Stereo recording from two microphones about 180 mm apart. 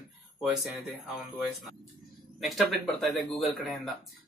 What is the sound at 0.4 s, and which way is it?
Speech, centre (ahead or behind).